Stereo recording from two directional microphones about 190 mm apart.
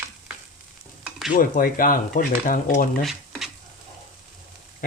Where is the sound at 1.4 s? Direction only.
45° left (ahead or behind).